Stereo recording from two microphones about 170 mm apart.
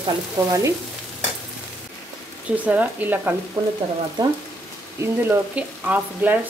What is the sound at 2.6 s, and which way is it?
Speech, 10° right (ahead or behind).